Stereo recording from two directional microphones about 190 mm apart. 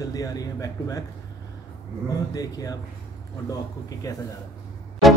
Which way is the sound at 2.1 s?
20° left (ahead or behind).